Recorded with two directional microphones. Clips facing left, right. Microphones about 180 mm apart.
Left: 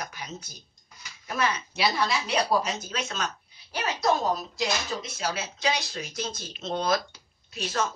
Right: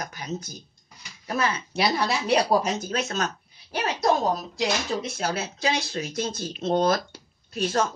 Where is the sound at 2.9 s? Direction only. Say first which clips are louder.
Right 5 dB; 40° right (ahead or behind).